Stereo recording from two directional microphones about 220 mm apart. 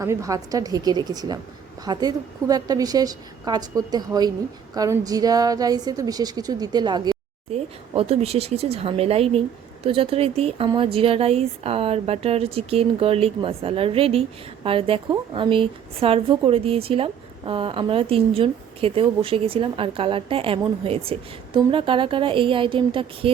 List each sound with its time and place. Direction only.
0.0 s a woman's voice: 15° right (ahead or behind)